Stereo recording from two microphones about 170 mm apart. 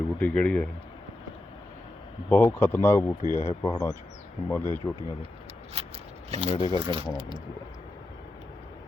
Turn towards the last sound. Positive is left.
turn(degrees=-30)  # may be behind; listen again after turning